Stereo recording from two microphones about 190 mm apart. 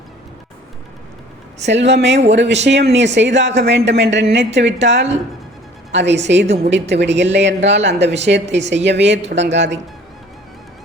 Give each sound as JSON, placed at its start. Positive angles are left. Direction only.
{"t": 1.6, "sound": "speech", "side_deg": -65}